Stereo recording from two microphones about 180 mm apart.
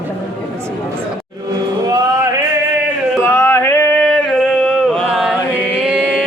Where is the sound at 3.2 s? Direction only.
10° left (ahead or behind); by 6.3 s 5° right (ahead or behind).